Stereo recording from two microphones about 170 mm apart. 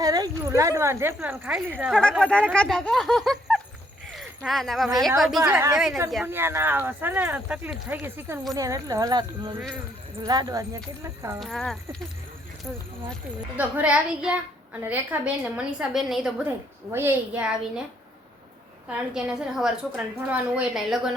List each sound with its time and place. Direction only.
0.0 s a woman's voice: 20° right (ahead or behind)
2.2 s speech: 5° left (ahead or behind)
5.4 s a woman's voice: 15° right (ahead or behind)
11.3 s speech: centre (ahead or behind)
13.6 s a woman's voice: 10° right (ahead or behind)
16.9 s a woman's voice: 10° right (ahead or behind)
18.9 s speech: 5° right (ahead or behind)